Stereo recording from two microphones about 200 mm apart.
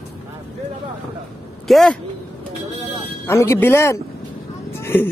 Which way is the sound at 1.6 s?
Centre (ahead or behind).